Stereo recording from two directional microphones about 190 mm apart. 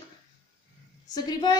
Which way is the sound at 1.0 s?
20° left (ahead or behind).